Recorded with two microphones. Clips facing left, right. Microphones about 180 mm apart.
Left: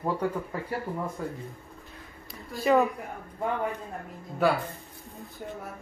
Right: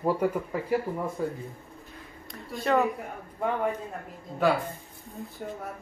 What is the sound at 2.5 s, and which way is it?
Speech, centre (ahead or behind).